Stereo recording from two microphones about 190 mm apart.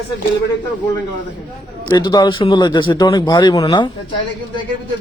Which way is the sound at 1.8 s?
20° left (ahead or behind).